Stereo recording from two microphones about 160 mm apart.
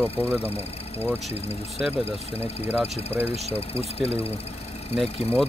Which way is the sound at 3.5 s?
40° left (ahead or behind).